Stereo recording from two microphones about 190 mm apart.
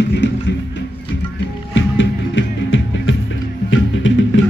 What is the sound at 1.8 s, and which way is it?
Music, 75° left (ahead or behind).